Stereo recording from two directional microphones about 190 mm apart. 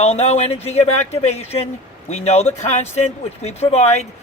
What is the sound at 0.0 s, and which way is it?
Speech, 35° left (ahead or behind).